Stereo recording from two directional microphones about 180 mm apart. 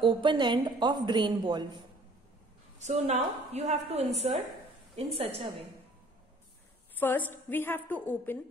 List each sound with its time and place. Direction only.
0.0 s a woman's voice: 25° right (ahead or behind)
2.8 s a woman's voice: 35° right (ahead or behind)
7.0 s a woman's voice: 10° left (ahead or behind)